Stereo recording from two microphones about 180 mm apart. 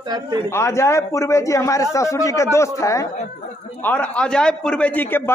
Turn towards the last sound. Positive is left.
turn(degrees=10)  # may be behind; listen again after turning